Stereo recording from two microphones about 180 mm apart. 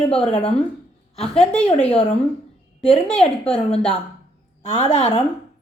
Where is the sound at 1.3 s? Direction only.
5° left (ahead or behind).